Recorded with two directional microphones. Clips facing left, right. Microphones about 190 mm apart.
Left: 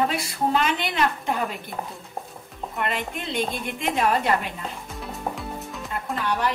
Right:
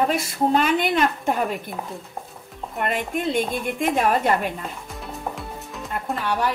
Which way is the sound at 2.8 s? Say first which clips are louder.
Right 6 dB; 50° right (ahead or behind).